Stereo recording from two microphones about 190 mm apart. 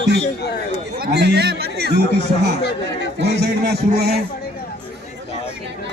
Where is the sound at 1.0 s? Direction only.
60° right (ahead or behind).